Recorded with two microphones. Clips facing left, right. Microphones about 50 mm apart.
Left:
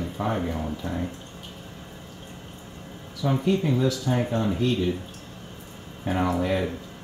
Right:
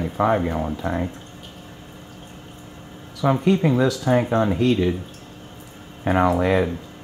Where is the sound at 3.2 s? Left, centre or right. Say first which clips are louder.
Right 5 dB; right.